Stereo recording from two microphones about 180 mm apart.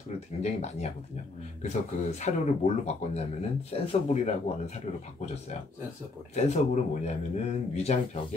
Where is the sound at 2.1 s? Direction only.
40° left (ahead or behind).